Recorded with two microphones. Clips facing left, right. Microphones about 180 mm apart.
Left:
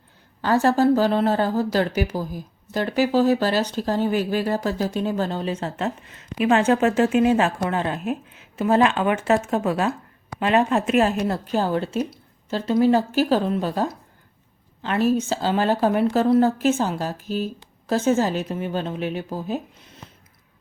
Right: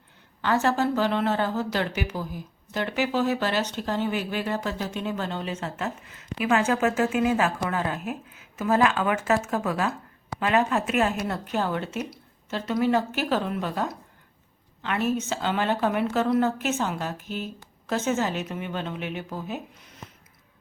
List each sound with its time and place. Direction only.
0.4 s speech: 35° left (ahead or behind)